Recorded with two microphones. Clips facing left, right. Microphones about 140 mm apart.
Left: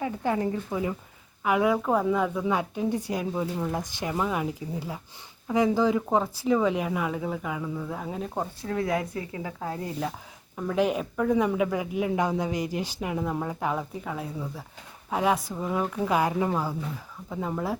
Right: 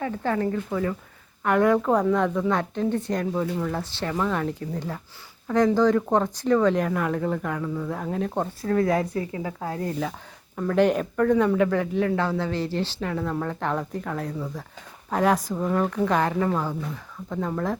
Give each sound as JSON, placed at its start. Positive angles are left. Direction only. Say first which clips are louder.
{"t": 0.0, "sound": "speech", "louder": "right 2 dB", "side_deg": 15}
{"t": 9.1, "sound": "speech", "louder": "right 5 dB", "side_deg": -35}
{"t": 9.6, "sound": "speech", "louder": "right 3 dB", "side_deg": -45}
{"t": 10.6, "sound": "speech", "louder": "right 4 dB", "side_deg": 5}